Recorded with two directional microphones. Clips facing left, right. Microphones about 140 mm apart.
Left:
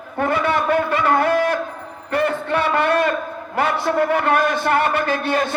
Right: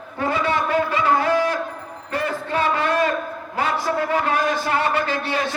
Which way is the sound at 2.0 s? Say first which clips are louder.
Left 5 dB; 60° left (ahead or behind).